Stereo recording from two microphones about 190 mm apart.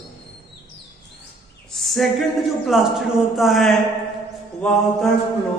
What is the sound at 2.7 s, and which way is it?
A man's voice, centre (ahead or behind).